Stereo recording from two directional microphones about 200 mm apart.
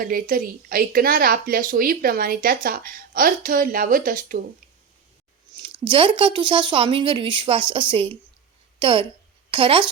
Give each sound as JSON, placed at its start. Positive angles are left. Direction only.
{"t": 0.0, "sound": "a woman's voice", "side_deg": -45}
{"t": 5.9, "sound": "a woman's voice", "side_deg": -25}